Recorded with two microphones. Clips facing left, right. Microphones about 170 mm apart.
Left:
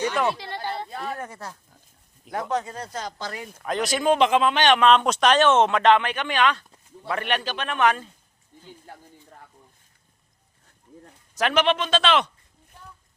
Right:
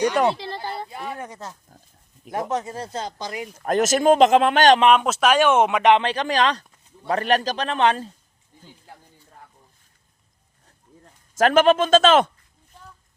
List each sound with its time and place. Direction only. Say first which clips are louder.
0.3 s speech: right 3 dB; 30° right (ahead or behind)
1.1 s speech: even; 15° right (ahead or behind)
3.6 s a man's voice: right 6 dB; 45° right (ahead or behind)
4.9 s speech: right 1 dB; 5° right (ahead or behind)
6.0 s a man's voice: right 2 dB; 35° right (ahead or behind)
11.3 s a man's voice: right 6 dB; 45° right (ahead or behind)